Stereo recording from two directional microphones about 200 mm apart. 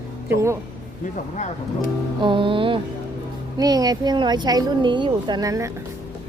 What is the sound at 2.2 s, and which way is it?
Speech, 25° right (ahead or behind).